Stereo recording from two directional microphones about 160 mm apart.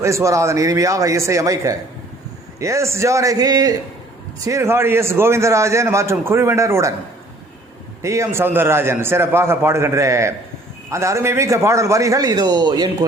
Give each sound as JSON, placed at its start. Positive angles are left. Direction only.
{"t": 0.0, "sound": "a man's voice", "side_deg": -20}
{"t": 8.0, "sound": "a man's voice", "side_deg": -20}